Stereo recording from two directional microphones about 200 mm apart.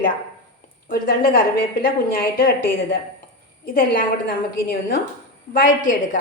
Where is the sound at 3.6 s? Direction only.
45° left (ahead or behind).